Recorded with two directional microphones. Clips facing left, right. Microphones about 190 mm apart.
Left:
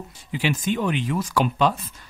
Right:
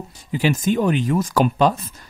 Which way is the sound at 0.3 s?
40° right (ahead or behind).